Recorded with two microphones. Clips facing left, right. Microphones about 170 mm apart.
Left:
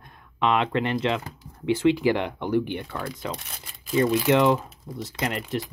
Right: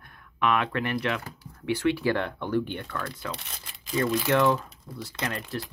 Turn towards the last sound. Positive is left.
turn(degrees=20)  # may be behind; listen again after turning